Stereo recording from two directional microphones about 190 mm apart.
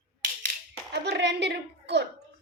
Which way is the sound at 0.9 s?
65° right (ahead or behind).